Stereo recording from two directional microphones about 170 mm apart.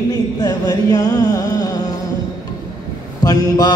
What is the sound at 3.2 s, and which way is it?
Mantra, 20° left (ahead or behind).